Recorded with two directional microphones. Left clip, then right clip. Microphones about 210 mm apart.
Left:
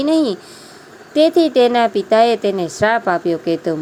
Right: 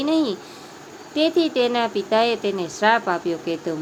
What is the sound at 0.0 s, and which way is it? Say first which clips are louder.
Speech: left 5 dB; 30° left (ahead or behind).